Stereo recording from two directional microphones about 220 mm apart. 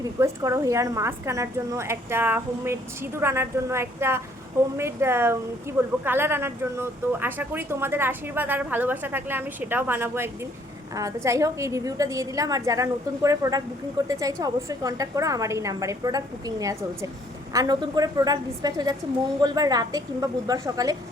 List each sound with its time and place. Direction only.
0.0 s speech: 15° right (ahead or behind)